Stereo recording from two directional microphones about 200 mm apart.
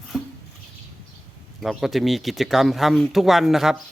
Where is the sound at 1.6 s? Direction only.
Centre (ahead or behind).